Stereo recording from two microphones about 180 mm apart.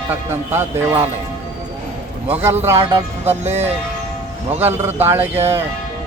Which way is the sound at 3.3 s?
35° right (ahead or behind).